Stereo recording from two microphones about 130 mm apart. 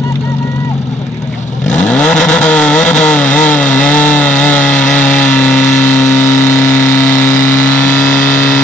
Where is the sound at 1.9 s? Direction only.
5° left (ahead or behind).